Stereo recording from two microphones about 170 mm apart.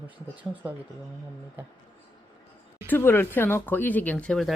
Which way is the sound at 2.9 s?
10° left (ahead or behind).